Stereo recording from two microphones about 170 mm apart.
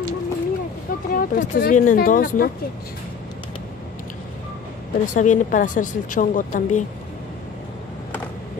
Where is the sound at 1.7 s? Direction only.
50° left (ahead or behind).